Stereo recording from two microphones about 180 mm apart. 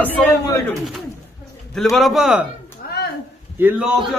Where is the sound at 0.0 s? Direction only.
15° left (ahead or behind).